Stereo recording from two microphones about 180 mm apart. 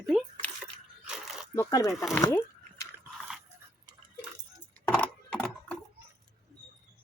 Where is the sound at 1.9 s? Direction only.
Centre (ahead or behind).